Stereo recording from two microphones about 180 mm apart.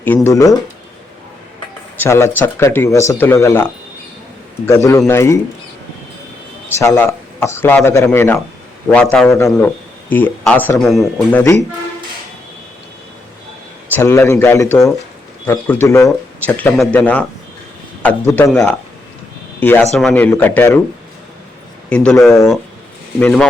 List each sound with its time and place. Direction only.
0.0 s speech: 10° left (ahead or behind)
2.0 s speech: 15° left (ahead or behind)
6.7 s speech: 15° left (ahead or behind)
9.3 s speech: 15° left (ahead or behind)
13.9 s speech: 15° left (ahead or behind)
18.3 s speech: 20° left (ahead or behind)
18.5 s speech: centre (ahead or behind)
21.8 s a man's voice: 5° left (ahead or behind)
23.2 s speech: 5° left (ahead or behind)